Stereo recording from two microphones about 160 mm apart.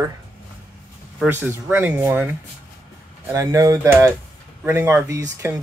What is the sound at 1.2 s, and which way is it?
Speech, 15° right (ahead or behind).